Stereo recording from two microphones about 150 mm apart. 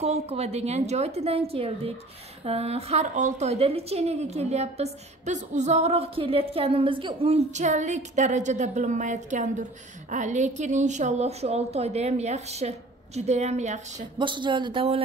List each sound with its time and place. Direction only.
0.0 s a woman's voice: 45° right (ahead or behind)
14.1 s speech: 30° right (ahead or behind)